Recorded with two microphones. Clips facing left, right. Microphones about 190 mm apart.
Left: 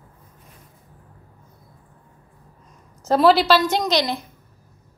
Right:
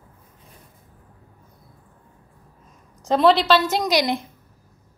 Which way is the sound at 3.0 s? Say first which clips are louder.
Left 1 dB; 5° left (ahead or behind).